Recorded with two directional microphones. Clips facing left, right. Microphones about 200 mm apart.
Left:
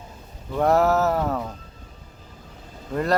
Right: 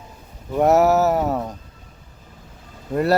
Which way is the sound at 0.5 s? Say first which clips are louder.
Right 4 dB; 20° right (ahead or behind).